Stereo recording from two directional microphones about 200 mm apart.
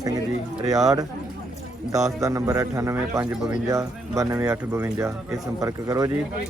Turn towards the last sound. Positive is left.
turn(degrees=-15)  # may be behind; listen again after turning